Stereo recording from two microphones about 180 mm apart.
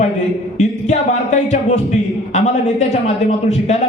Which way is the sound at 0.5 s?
40° left (ahead or behind).